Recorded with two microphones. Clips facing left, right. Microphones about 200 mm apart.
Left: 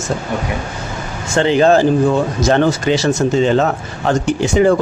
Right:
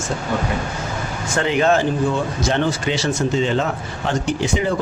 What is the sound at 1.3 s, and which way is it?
Speech, 30° left (ahead or behind).